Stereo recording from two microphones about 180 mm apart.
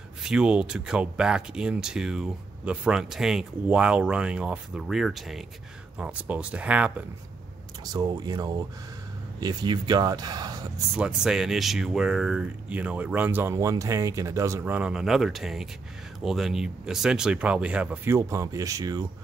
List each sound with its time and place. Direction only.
0.2 s speech: 5° right (ahead or behind)
7.8 s speech: 20° right (ahead or behind)
11.0 s speech: 5° right (ahead or behind)